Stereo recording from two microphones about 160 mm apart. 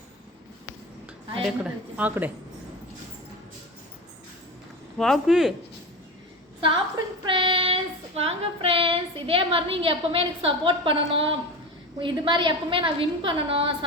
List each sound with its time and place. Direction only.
1.4 s a woman's voice: 5° right (ahead or behind)
4.9 s a man's voice: centre (ahead or behind)
7.3 s child singing: 30° right (ahead or behind)